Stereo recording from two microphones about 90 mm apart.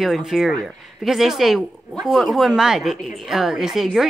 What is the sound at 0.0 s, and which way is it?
Speech, centre (ahead or behind).